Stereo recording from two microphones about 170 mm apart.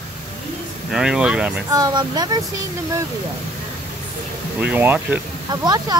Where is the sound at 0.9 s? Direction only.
5° right (ahead or behind).